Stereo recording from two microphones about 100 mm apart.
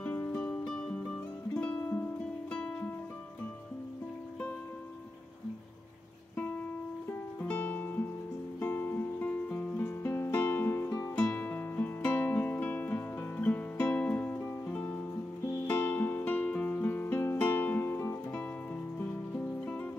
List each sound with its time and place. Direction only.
0.0 s music: 20° left (ahead or behind)
6.3 s music: 20° left (ahead or behind)